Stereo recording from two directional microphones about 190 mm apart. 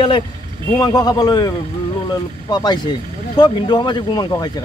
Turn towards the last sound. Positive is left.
turn(degrees=20)  # may be behind; listen again after turning